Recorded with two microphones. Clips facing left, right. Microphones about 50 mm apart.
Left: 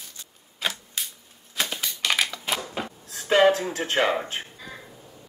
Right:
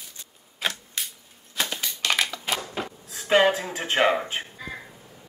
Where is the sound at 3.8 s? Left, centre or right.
Right.